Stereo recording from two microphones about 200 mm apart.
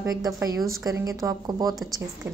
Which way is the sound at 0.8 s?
15° right (ahead or behind).